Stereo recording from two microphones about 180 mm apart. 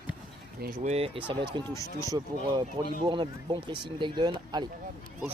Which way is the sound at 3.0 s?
25° right (ahead or behind).